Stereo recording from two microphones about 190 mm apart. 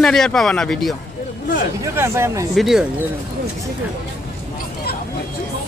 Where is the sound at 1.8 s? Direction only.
15° right (ahead or behind).